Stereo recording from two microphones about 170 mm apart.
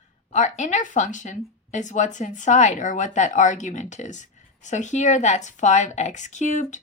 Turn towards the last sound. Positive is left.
turn(degrees=45)  # may be behind; listen again after turning